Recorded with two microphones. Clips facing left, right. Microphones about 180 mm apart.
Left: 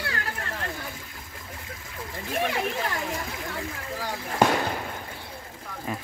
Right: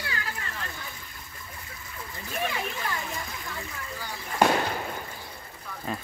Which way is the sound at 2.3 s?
70° left (ahead or behind).